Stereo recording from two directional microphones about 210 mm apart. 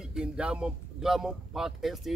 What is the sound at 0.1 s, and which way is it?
Speech, 5° right (ahead or behind).